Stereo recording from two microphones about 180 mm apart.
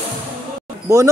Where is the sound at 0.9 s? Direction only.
20° right (ahead or behind).